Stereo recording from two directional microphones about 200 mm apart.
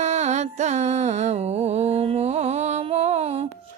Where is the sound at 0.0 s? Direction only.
35° right (ahead or behind).